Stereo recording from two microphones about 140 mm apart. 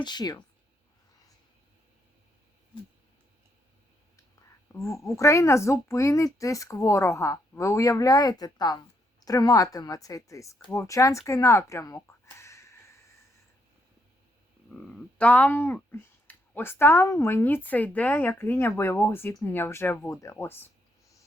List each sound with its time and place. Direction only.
0.0 s a woman's voice: 30° left (ahead or behind)
4.7 s a woman's voice: 20° left (ahead or behind)
14.7 s speech: 10° left (ahead or behind)